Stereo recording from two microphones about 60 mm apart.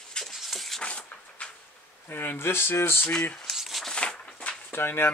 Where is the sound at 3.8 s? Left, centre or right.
Centre.